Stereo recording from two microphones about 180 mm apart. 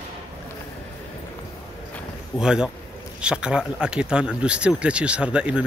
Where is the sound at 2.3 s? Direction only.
5° right (ahead or behind).